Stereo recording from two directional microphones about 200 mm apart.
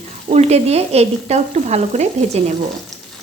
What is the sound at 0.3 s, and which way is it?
A woman's voice, 30° right (ahead or behind).